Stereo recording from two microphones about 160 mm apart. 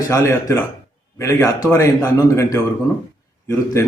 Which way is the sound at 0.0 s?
20° left (ahead or behind).